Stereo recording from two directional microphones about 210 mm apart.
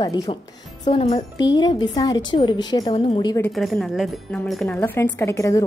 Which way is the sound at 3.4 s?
5° left (ahead or behind).